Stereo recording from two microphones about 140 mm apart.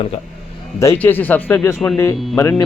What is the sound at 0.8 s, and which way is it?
Speech, 15° left (ahead or behind).